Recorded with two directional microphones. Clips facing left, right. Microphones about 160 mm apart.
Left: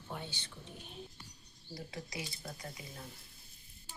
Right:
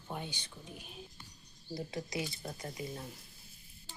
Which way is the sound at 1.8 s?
20° right (ahead or behind).